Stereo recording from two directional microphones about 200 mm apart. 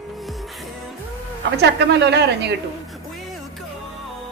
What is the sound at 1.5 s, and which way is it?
A woman's voice, 55° right (ahead or behind).